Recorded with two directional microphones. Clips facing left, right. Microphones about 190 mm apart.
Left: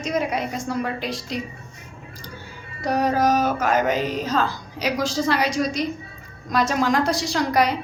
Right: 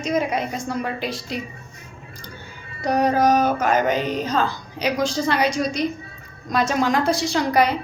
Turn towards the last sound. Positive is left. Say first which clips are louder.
# right 1 dB
turn(degrees=0)  # may be behind; listen again after turning